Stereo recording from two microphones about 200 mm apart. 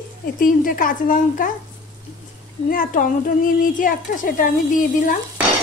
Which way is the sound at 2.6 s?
45° left (ahead or behind).